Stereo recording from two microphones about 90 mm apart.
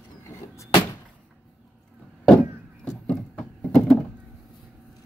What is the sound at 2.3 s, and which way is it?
Door, 5° left (ahead or behind).